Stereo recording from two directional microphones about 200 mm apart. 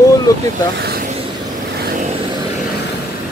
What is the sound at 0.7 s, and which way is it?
Vehicle, 50° right (ahead or behind).